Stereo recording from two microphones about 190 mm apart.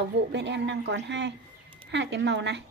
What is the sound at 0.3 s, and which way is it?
A woman's voice, 65° right (ahead or behind).